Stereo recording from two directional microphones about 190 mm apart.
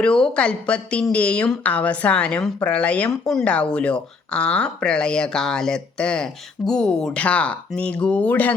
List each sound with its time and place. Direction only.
0.0 s speech: 5° left (ahead or behind)